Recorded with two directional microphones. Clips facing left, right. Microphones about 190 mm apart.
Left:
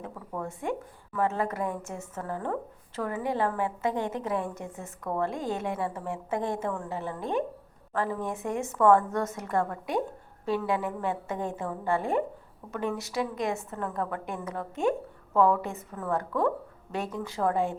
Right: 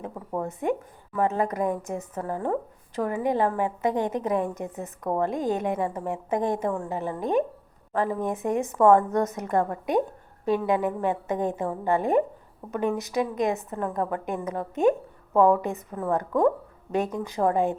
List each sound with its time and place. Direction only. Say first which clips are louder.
0.0 s a woman's voice: right 5 dB; 30° right (ahead or behind)